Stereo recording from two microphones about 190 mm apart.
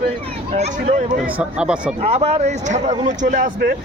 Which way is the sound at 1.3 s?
5° right (ahead or behind).